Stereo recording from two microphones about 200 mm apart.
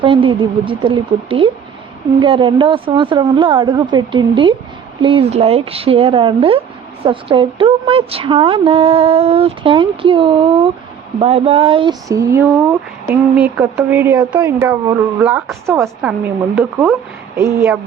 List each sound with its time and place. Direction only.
0.0 s speech: 25° right (ahead or behind)